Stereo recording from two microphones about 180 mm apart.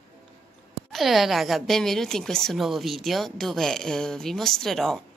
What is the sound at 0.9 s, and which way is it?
A woman's voice, centre (ahead or behind).